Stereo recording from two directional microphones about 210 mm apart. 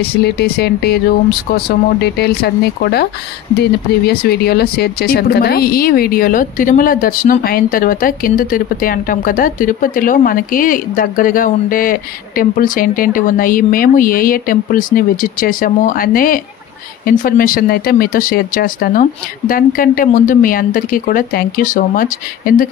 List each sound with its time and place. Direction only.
0.0 s speech: 50° left (ahead or behind)
2.0 s speech: 50° left (ahead or behind)